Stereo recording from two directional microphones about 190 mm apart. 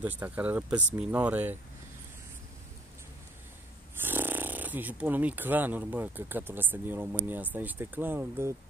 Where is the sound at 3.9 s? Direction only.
10° right (ahead or behind).